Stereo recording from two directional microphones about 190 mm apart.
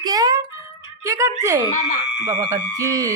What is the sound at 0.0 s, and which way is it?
Music, 20° right (ahead or behind).